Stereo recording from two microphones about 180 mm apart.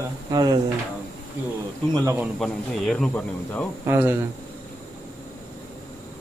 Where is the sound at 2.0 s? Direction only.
15° right (ahead or behind).